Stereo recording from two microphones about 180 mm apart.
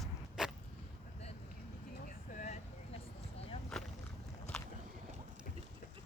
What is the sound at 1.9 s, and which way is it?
Vehicle, 50° left (ahead or behind).